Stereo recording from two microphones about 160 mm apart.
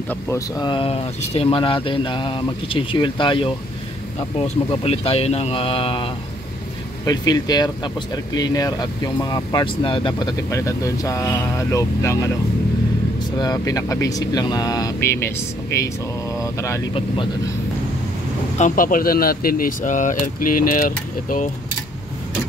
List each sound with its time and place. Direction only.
0.6 s speech: 30° left (ahead or behind)
13.4 s speech: 25° left (ahead or behind)
18.6 s speech: 60° left (ahead or behind)